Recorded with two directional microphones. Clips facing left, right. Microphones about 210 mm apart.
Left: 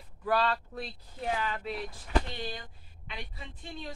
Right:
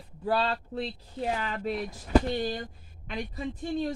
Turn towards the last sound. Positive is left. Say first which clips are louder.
# right 12 dB
turn(degrees=-45)  # may be behind; listen again after turning